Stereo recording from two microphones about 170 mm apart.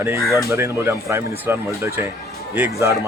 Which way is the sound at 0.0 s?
15° right (ahead or behind).